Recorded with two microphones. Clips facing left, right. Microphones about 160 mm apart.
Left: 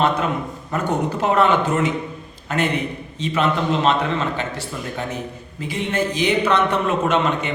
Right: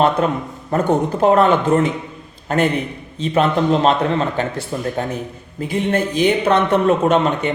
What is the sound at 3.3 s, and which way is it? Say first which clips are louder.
A man's voice: right 4 dB; 35° right (ahead or behind).